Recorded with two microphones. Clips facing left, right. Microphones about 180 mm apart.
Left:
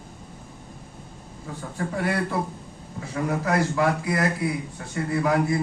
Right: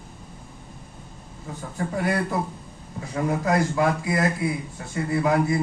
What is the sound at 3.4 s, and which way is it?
A man's voice, 20° right (ahead or behind).